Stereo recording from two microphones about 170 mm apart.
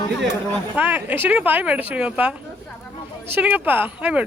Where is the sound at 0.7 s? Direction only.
10° right (ahead or behind).